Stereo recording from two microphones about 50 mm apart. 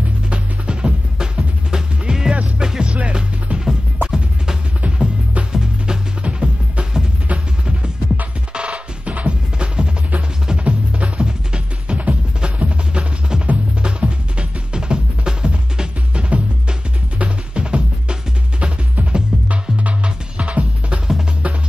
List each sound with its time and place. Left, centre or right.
0.3 s music: centre
4.8 s music: right
8.5 s music: right